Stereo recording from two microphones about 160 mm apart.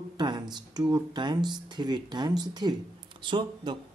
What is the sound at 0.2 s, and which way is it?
Speech, 25° right (ahead or behind).